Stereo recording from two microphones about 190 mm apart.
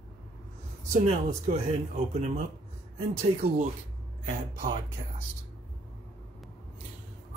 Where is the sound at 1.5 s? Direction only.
35° right (ahead or behind).